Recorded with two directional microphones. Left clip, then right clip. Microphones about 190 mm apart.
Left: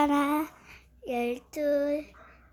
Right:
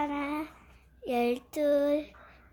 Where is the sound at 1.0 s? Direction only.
5° right (ahead or behind).